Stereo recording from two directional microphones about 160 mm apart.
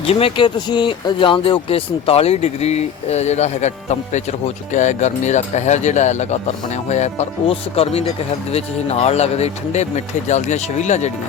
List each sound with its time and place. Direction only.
0.0 s speech: 35° left (ahead or behind)